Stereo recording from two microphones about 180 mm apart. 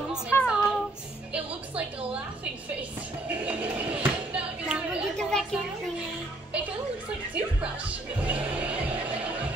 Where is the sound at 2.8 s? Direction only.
5° right (ahead or behind).